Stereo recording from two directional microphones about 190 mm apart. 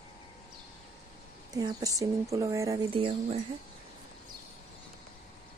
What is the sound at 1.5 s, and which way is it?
Speech, 20° right (ahead or behind).